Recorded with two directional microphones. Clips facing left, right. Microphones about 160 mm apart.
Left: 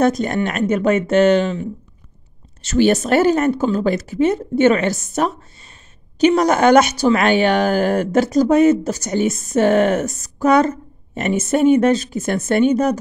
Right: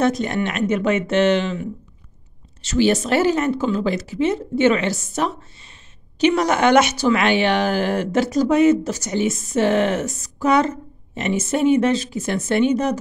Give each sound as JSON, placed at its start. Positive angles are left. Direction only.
{"t": 0.0, "sound": "speech", "side_deg": 45}